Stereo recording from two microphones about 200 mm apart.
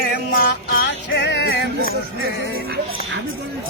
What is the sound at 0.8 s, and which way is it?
Music, 55° left (ahead or behind).